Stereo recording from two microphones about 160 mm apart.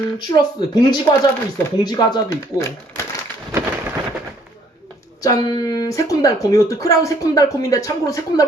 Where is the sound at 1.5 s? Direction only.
25° left (ahead or behind).